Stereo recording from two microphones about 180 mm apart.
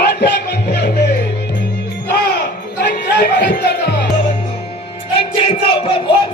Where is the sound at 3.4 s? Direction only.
60° left (ahead or behind).